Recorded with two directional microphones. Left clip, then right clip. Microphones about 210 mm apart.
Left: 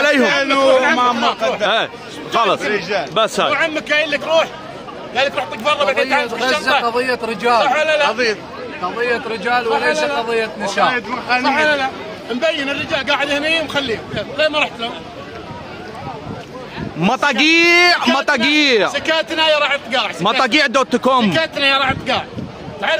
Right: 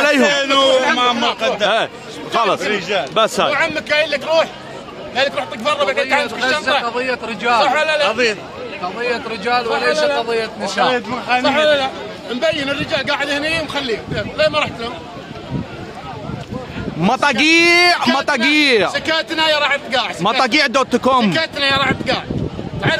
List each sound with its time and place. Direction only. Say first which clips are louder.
0.0 s a sound: even; 10° right (ahead or behind)
0.3 s a sound: even; 40° right (ahead or behind)
2.3 s a man's voice: left 1 dB; 5° right (ahead or behind)
2.7 s a man's voice: even; 55° right (ahead or behind)
3.2 s a man's voice: even; centre (ahead or behind)
6.3 s a man's voice: left 1 dB; 50° left (ahead or behind)
7.6 s a man's voice: even; 10° right (ahead or behind)
8.1 s a man's voice: right 1 dB; 60° right (ahead or behind)
9.0 s a man's voice: left 1 dB; 10° left (ahead or behind)
11.4 s a man's voice: right 2 dB; 25° right (ahead or behind); by 14.9 s 5° left (ahead or behind)
17.0 s a man's voice: even; 10° right (ahead or behind)